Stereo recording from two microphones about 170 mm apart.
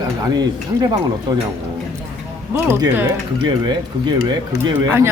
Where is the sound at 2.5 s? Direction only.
15° right (ahead or behind).